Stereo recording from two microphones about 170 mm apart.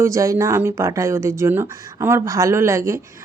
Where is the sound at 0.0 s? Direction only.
20° right (ahead or behind).